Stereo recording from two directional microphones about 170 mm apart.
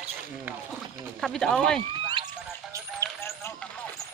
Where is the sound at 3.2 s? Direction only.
15° left (ahead or behind).